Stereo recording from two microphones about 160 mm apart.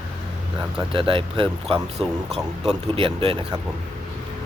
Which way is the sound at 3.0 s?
35° right (ahead or behind).